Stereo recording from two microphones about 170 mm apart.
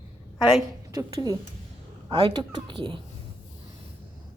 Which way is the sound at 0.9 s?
20° right (ahead or behind).